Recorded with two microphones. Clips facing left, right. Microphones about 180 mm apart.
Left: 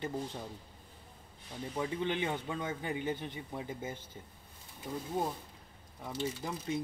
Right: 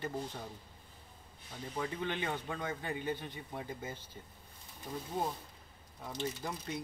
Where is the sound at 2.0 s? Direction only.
20° left (ahead or behind).